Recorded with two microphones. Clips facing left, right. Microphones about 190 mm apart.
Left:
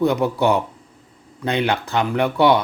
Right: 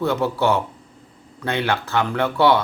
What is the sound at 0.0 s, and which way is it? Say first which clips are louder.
Speech: left 2 dB; 15° left (ahead or behind).